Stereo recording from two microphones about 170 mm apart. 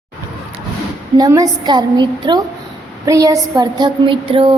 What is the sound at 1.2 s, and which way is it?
Female singing, 20° right (ahead or behind).